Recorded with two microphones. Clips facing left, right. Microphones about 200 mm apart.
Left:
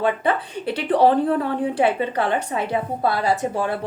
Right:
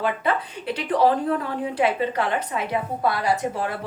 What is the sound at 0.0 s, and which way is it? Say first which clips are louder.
A woman's voice: left 3 dB; 30° left (ahead or behind).